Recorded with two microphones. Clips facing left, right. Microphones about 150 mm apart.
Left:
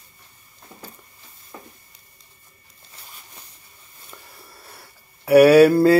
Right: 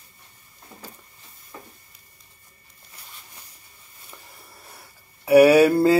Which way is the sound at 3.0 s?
25° left (ahead or behind).